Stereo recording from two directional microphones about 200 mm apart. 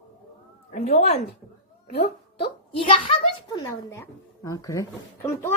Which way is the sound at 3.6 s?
15° left (ahead or behind).